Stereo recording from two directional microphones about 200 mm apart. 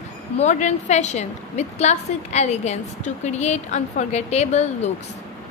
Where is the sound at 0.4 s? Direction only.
35° left (ahead or behind).